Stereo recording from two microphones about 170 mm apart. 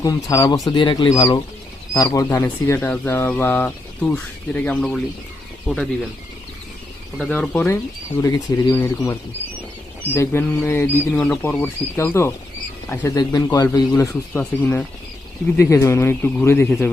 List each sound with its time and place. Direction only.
0.0 s speech: 20° left (ahead or behind); by 5.9 s centre (ahead or behind)
7.3 s speech: 5° left (ahead or behind)
10.2 s speech: 15° left (ahead or behind)